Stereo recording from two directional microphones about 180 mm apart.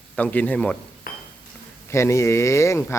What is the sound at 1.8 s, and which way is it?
Speech, 15° left (ahead or behind).